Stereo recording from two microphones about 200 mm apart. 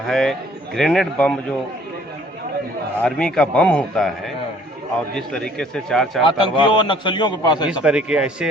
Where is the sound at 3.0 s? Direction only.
5° left (ahead or behind).